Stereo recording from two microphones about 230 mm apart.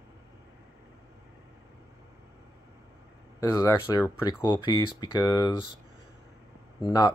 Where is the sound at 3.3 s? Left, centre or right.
Centre.